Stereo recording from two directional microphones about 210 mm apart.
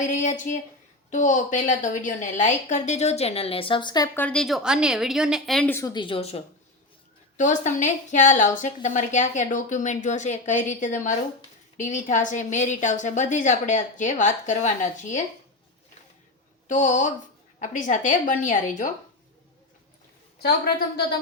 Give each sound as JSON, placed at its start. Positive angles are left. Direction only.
{"t": 0.0, "sound": "a woman's voice", "side_deg": 35}
{"t": 16.6, "sound": "a woman's voice", "side_deg": 35}
{"t": 20.4, "sound": "a woman's voice", "side_deg": 50}